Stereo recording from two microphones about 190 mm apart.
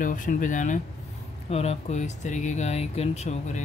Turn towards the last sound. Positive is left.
turn(degrees=35)  # may be behind; listen again after turning